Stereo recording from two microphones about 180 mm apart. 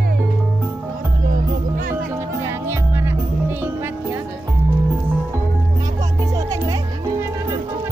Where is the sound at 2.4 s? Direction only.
15° right (ahead or behind).